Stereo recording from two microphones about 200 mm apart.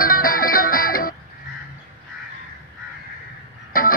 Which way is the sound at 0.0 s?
45° left (ahead or behind).